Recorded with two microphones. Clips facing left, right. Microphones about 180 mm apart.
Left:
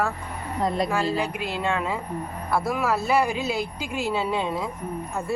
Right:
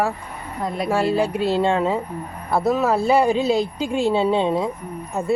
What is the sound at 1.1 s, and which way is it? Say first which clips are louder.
Speech: right 8 dB; 30° right (ahead or behind).